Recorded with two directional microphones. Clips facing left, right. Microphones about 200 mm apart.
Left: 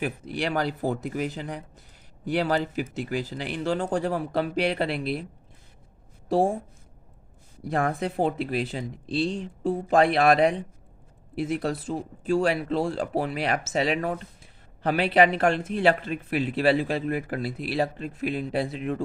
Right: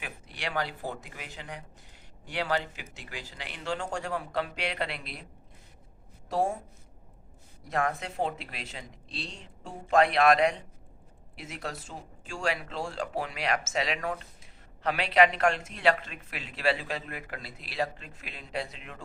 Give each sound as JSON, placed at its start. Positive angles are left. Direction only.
{"t": 0.0, "sound": "speech", "side_deg": 40}
{"t": 6.2, "sound": "a woman's voice", "side_deg": 30}
{"t": 7.7, "sound": "speech", "side_deg": 35}
{"t": 15.4, "sound": "speech", "side_deg": 30}